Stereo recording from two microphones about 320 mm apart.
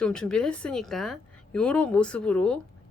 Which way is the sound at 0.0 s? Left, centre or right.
Centre.